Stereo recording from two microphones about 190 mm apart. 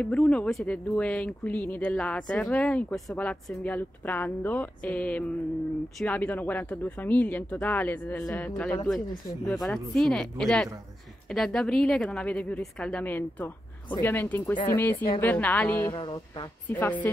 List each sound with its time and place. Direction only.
0.0 s a woman's voice: 5° left (ahead or behind)
16.0 s speech: 25° left (ahead or behind)
16.6 s speech: 10° left (ahead or behind)